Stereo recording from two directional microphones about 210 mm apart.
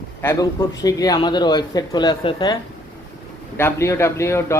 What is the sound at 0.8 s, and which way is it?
Speech, 15° left (ahead or behind).